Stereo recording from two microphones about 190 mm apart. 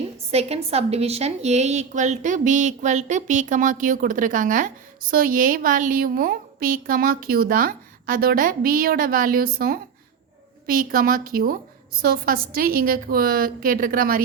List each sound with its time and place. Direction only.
0.3 s a woman's voice: 35° right (ahead or behind)